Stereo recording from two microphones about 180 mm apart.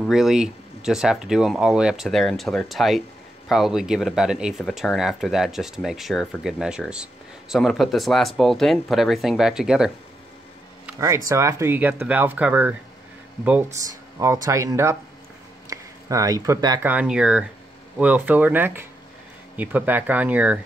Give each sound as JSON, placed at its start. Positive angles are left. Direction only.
{"t": 0.0, "sound": "speech", "side_deg": 0}
{"t": 11.0, "sound": "speech", "side_deg": -15}
{"t": 16.8, "sound": "speech", "side_deg": -5}